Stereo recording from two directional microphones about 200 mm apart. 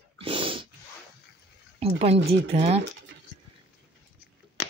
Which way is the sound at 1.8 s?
30° right (ahead or behind).